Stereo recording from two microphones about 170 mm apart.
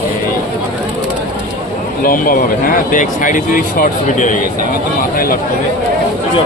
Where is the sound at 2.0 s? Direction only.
55° left (ahead or behind).